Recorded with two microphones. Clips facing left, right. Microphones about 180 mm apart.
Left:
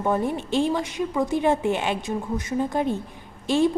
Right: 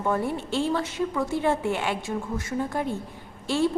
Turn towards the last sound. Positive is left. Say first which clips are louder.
# left 4 dB
turn(degrees=15)  # may be behind; listen again after turning